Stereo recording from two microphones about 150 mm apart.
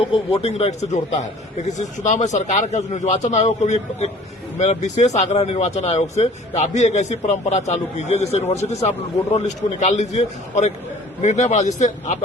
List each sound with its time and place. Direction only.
0.0 s speech: 40° left (ahead or behind)